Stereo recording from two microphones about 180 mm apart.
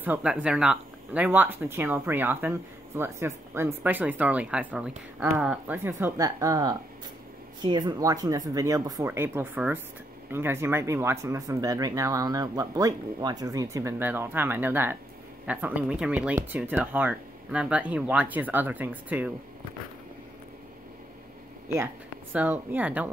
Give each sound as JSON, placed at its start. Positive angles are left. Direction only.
{"t": 0.0, "sound": "speech", "side_deg": -5}
{"t": 22.3, "sound": "speech", "side_deg": -10}